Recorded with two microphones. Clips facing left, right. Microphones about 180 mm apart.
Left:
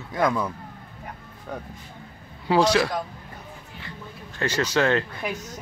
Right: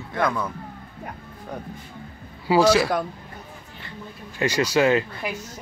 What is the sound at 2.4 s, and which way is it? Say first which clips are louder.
Speech: right 2 dB; 5° right (ahead or behind).